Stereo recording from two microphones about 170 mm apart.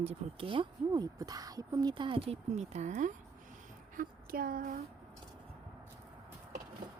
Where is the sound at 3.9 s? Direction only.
55° right (ahead or behind).